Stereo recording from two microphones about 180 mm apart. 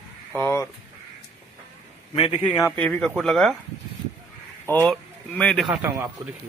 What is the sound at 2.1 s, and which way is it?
Speech, 30° left (ahead or behind).